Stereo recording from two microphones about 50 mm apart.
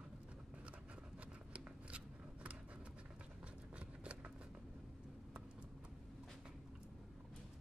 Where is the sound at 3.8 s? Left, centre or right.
Right.